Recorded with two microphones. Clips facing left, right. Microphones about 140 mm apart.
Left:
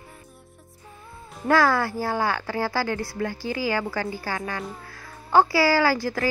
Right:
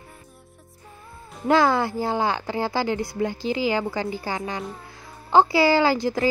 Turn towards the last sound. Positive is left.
turn(degrees=-20)  # may be behind; listen again after turning